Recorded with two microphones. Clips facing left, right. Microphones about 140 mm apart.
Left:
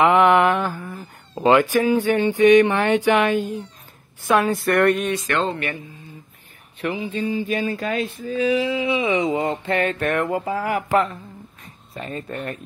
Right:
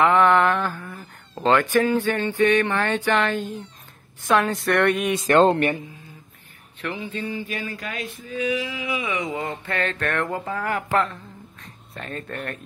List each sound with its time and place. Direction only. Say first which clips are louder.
0.0 s speech: left 2 dB; 15° left (ahead or behind); by 5.1 s centre (ahead or behind)
6.8 s a sound: left 5 dB; 15° left (ahead or behind)
11.9 s speech: left 3 dB; 5° left (ahead or behind)